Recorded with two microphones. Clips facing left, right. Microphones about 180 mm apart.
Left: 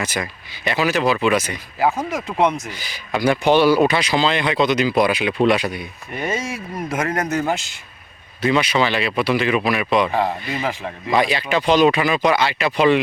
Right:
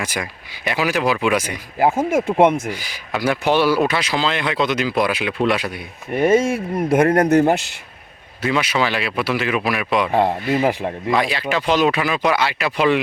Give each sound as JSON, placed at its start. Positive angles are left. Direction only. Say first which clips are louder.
{"t": 0.0, "sound": "speech", "louder": "left 1 dB", "side_deg": -10}
{"t": 2.0, "sound": "speech", "louder": "right 5 dB", "side_deg": -50}
{"t": 2.6, "sound": "speech", "louder": "right 3 dB", "side_deg": -10}
{"t": 6.1, "sound": "speech", "louder": "right 9 dB", "side_deg": -55}
{"t": 8.4, "sound": "speech", "louder": "left 2 dB", "side_deg": -5}
{"t": 11.1, "sound": "speech", "louder": "left 2 dB", "side_deg": 0}